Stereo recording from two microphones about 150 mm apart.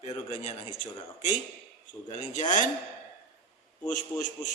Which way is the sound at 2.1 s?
50° left (ahead or behind).